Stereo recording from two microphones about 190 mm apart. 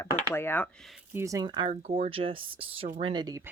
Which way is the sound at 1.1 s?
15° right (ahead or behind).